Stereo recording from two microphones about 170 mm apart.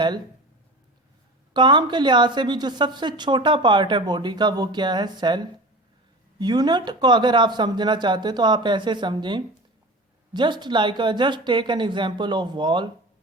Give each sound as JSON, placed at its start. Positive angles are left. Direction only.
{"t": 1.5, "sound": "a woman's voice", "side_deg": -25}